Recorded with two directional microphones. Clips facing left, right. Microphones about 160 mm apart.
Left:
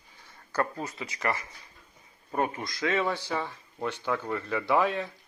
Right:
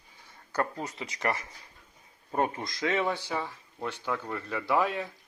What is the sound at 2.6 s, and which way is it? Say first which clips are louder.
Speech: left 1 dB; 20° right (ahead or behind).